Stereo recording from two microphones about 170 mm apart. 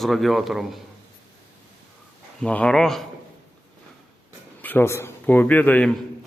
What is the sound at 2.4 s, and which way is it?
Speech, 5° left (ahead or behind).